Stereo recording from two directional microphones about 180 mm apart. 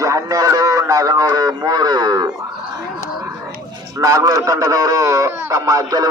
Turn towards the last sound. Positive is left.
turn(degrees=-20)  # may be behind; listen again after turning